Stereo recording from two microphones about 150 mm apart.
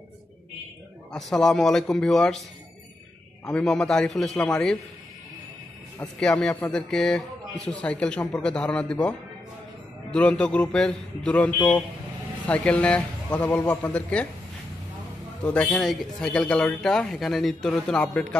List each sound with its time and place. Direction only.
1.1 s speech: 5° left (ahead or behind)
3.4 s speech: 5° left (ahead or behind)
5.9 s speech: 5° left (ahead or behind)
10.1 s speech: 10° left (ahead or behind)
15.4 s speech: 10° left (ahead or behind)